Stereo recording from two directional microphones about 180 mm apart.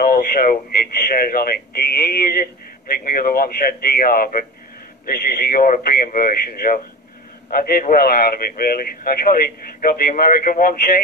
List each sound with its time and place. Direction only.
0.0 s speech: 60° left (ahead or behind)